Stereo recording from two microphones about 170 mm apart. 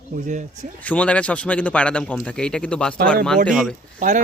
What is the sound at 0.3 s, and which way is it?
Speech, 45° right (ahead or behind).